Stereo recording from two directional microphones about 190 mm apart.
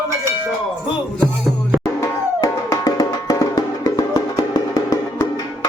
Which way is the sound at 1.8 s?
15° left (ahead or behind).